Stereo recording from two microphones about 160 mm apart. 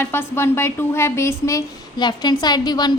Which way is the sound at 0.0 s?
15° left (ahead or behind).